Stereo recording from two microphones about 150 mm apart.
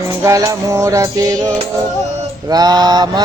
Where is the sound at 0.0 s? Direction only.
20° right (ahead or behind).